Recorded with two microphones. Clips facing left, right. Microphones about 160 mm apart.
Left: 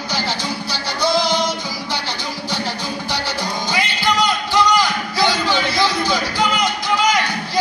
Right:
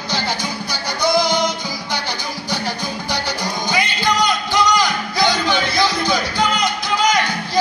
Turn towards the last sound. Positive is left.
turn(degrees=-15)  # may be behind; listen again after turning